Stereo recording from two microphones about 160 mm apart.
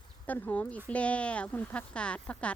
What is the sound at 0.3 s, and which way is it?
Speech, 10° left (ahead or behind).